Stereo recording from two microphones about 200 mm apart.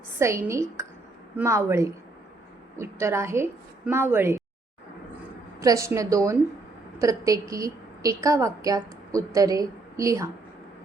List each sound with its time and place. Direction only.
0.2 s a woman's voice: 15° right (ahead or behind)
5.5 s a woman's voice: 15° right (ahead or behind)